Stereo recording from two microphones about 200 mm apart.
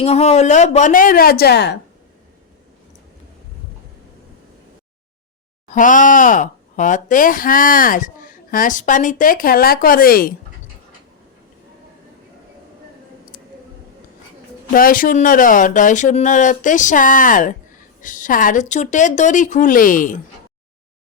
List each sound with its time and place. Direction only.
0.0 s speech: 30° left (ahead or behind); by 1.8 s 55° left (ahead or behind)
5.7 s speech: 40° left (ahead or behind)
14.7 s speech: 45° left (ahead or behind)